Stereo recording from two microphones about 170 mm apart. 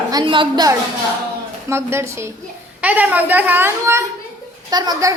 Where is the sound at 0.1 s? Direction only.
25° right (ahead or behind).